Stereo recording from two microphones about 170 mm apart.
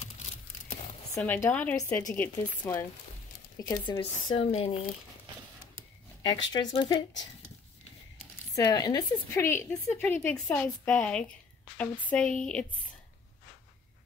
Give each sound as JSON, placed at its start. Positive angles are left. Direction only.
{"t": 0.0, "sound": "a sound", "side_deg": 40}
{"t": 1.1, "sound": "a woman's voice", "side_deg": 10}
{"t": 3.8, "sound": "speech", "side_deg": 35}
{"t": 6.2, "sound": "speech", "side_deg": 25}
{"t": 8.5, "sound": "a woman's voice", "side_deg": 20}